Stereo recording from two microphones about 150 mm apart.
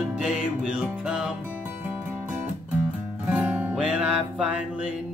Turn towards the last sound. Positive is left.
turn(degrees=-5)  # may be behind; listen again after turning